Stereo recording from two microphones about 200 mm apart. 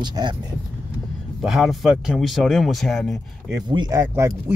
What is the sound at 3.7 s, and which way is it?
Speech, 20° right (ahead or behind).